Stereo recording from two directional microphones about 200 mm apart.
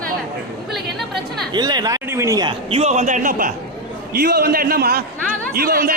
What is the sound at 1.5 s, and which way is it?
A man's voice, 20° right (ahead or behind).